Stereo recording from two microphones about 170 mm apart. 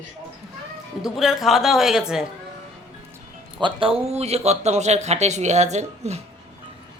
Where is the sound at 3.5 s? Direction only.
30° right (ahead or behind).